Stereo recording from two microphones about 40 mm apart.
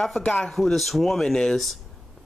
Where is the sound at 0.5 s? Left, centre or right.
Centre.